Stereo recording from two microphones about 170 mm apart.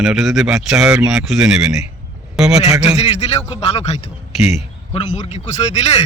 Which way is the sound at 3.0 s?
40° left (ahead or behind).